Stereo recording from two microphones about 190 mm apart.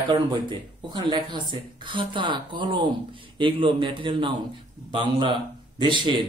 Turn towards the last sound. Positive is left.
turn(degrees=-25)  # may be behind; listen again after turning